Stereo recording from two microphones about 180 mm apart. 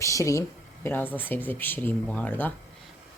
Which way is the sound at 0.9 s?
10° left (ahead or behind).